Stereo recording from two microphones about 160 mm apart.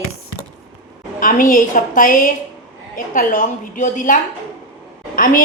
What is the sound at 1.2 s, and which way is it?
A woman's voice, 60° left (ahead or behind).